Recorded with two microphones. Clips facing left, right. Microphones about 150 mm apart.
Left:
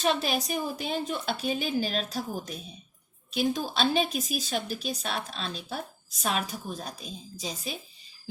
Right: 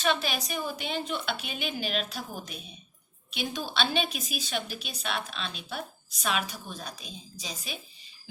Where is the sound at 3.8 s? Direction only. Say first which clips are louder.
Left 1 dB; 30° left (ahead or behind).